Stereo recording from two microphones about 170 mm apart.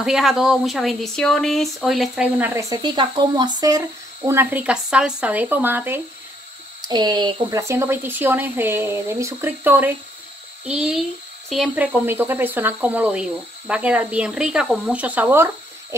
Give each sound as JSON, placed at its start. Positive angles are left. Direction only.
{"t": 0.0, "sound": "speech", "side_deg": 0}
{"t": 2.7, "sound": "speech", "side_deg": -25}
{"t": 6.8, "sound": "speech", "side_deg": -25}